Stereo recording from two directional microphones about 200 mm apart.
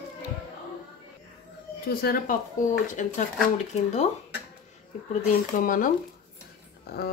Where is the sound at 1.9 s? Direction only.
50° left (ahead or behind).